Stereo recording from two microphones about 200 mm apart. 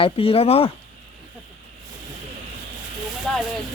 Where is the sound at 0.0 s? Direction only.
30° left (ahead or behind).